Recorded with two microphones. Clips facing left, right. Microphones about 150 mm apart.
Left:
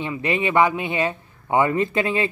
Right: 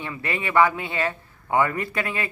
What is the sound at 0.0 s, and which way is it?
Speech, 20° left (ahead or behind).